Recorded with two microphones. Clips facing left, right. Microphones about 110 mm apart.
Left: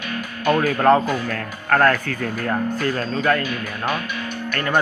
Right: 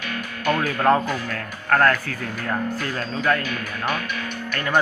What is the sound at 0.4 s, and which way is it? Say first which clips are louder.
Speech: left 3 dB; 5° left (ahead or behind).